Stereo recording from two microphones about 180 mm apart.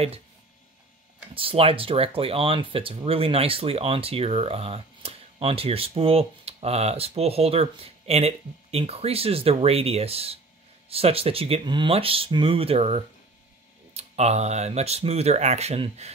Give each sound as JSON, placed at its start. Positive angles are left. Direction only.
{"t": 1.3, "sound": "speech", "side_deg": -30}